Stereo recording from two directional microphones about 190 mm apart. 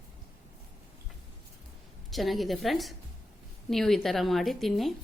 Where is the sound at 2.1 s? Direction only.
Centre (ahead or behind).